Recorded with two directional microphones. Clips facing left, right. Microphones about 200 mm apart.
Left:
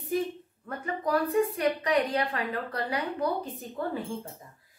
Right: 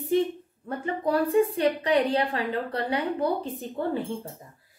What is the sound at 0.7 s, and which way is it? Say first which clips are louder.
Speech: right 3 dB; 30° right (ahead or behind).